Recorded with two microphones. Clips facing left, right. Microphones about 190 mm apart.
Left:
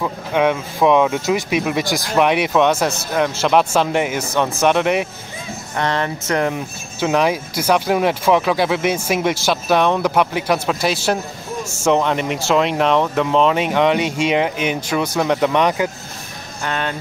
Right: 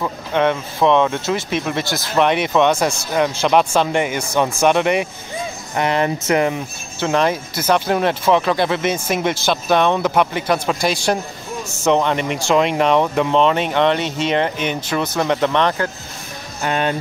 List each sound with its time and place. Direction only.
0.0 s speech: 5° left (ahead or behind)
5.8 s speech: 10° right (ahead or behind)
7.0 s speech: 5° left (ahead or behind)
16.6 s speech: 15° right (ahead or behind)